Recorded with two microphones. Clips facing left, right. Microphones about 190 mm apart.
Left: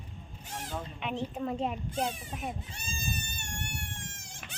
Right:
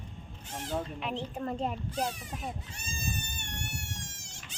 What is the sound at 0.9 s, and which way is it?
Speech, centre (ahead or behind).